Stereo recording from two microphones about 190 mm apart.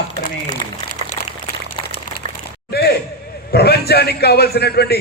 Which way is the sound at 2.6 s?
55° left (ahead or behind).